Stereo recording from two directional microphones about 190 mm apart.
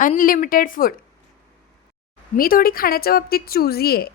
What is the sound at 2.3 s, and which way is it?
A woman's voice, 50° left (ahead or behind).